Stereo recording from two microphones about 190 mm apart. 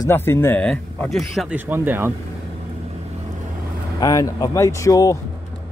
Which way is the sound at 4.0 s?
15° left (ahead or behind).